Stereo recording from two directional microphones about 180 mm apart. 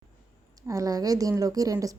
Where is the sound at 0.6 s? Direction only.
20° right (ahead or behind).